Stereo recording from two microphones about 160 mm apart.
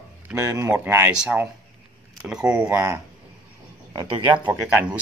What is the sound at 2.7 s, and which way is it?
Speech, 15° right (ahead or behind).